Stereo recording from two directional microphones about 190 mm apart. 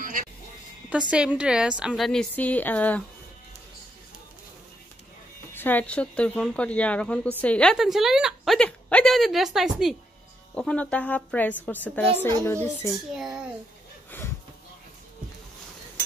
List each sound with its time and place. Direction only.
0.0 s music: 45° right (ahead or behind)
1.1 s speech: 5° right (ahead or behind)
5.5 s a woman's voice: 10° left (ahead or behind)
13.1 s speech: centre (ahead or behind)
14.1 s speech: 10° left (ahead or behind)